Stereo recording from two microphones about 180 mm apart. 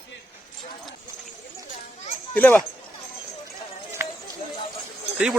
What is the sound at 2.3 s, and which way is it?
Speech, 10° left (ahead or behind).